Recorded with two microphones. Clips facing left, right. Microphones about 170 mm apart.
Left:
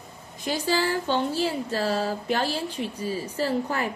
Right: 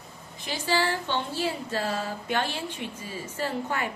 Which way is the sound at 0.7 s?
40° left (ahead or behind).